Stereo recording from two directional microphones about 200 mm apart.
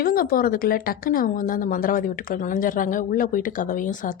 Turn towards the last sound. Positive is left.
turn(degrees=40)  # may be behind; listen again after turning